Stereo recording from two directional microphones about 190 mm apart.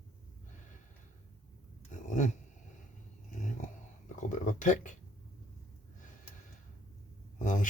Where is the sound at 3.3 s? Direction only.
40° left (ahead or behind).